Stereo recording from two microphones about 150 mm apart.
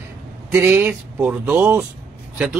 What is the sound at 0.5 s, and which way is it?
A man's voice, 15° right (ahead or behind).